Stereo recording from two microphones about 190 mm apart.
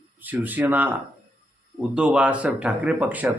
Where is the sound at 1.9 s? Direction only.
5° right (ahead or behind).